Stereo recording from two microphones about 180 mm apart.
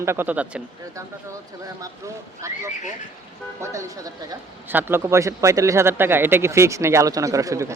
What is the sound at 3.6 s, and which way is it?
Speech, 20° right (ahead or behind).